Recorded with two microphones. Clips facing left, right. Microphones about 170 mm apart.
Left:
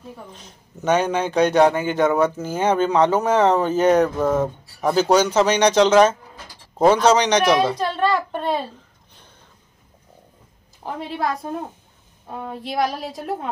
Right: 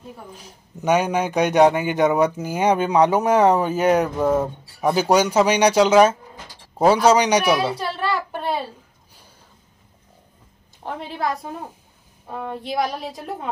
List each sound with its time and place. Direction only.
0.3 s speech: 5° right (ahead or behind)
11.0 s a woman's voice: centre (ahead or behind)